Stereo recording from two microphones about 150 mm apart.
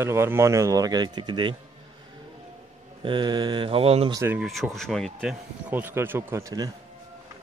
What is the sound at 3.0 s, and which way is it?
Mantra, 30° right (ahead or behind).